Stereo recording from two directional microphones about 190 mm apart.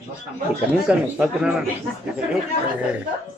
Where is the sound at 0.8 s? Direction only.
5° right (ahead or behind).